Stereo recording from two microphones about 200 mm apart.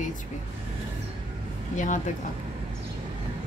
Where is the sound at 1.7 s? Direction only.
40° left (ahead or behind).